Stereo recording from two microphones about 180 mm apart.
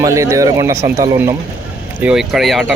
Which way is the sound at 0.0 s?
15° right (ahead or behind).